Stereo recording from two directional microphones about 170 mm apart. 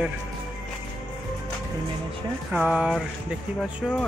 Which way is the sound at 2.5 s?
10° right (ahead or behind).